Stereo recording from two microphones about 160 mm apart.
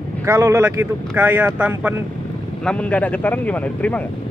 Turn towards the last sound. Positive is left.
turn(degrees=10)  # may be behind; listen again after turning